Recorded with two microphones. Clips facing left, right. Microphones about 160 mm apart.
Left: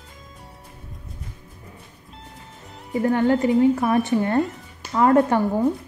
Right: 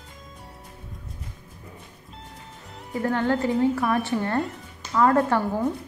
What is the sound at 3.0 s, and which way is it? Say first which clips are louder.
A woman's voice: left 4 dB; 15° left (ahead or behind).